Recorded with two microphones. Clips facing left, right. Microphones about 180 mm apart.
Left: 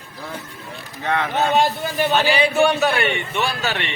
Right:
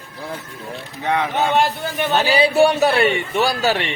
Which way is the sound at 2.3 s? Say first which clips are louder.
Right 6 dB; 35° right (ahead or behind).